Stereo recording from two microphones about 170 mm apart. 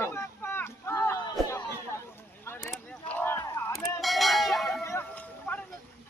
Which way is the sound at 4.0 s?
Centre (ahead or behind).